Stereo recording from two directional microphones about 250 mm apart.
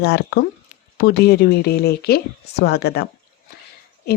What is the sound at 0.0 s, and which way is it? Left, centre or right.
A woman's voice, left.